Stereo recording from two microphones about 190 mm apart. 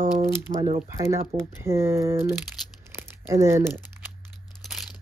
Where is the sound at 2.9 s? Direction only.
15° right (ahead or behind).